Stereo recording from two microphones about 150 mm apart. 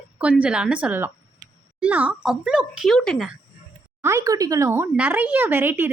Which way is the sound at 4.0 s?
20° right (ahead or behind).